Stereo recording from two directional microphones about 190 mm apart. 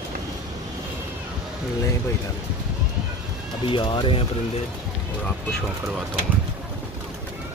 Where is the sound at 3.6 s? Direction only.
25° left (ahead or behind).